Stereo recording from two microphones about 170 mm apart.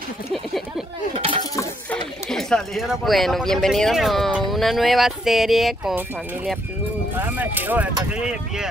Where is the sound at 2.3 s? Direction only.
5° left (ahead or behind).